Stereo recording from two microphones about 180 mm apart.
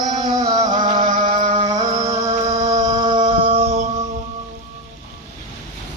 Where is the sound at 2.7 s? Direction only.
25° right (ahead or behind).